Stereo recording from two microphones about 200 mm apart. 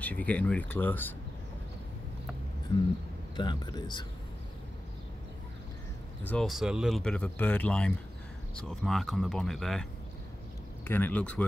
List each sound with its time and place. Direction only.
0.0 s speech: 5° left (ahead or behind)
3.3 s speech: 20° left (ahead or behind)
6.2 s speech: centre (ahead or behind)